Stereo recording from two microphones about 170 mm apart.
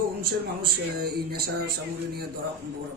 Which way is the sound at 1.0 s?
65° right (ahead or behind).